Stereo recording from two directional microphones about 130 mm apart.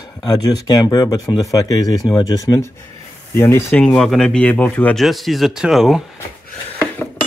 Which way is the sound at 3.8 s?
5° left (ahead or behind).